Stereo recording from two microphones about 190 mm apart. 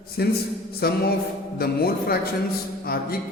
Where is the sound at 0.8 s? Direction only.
55° left (ahead or behind).